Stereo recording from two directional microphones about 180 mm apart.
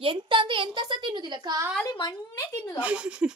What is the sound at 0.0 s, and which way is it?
A woman's voice, 30° right (ahead or behind).